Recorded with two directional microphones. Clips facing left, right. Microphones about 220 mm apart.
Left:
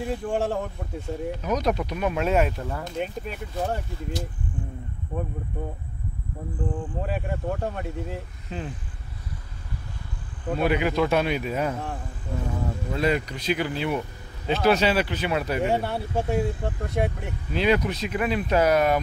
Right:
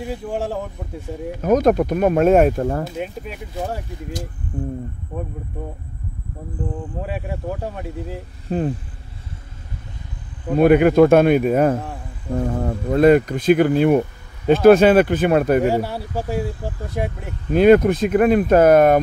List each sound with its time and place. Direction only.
0.0 s speech: centre (ahead or behind)
1.4 s speech: 50° right (ahead or behind)
3.0 s speech: 5° right (ahead or behind)
4.5 s speech: 40° right (ahead or behind)
6.7 s speech: 5° right (ahead or behind)
8.5 s speech: 50° right (ahead or behind)
10.5 s speech: 50° right (ahead or behind)
15.6 s speech: centre (ahead or behind)
17.5 s speech: 50° right (ahead or behind)